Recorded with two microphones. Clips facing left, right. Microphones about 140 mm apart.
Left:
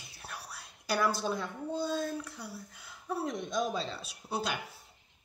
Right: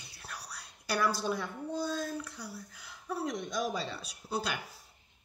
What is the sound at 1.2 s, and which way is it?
Speech, centre (ahead or behind).